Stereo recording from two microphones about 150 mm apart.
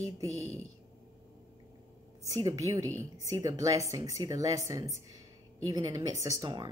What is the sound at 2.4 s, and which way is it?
Speech, 20° right (ahead or behind).